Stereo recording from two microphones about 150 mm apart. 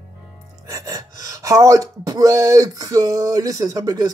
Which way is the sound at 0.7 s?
20° right (ahead or behind).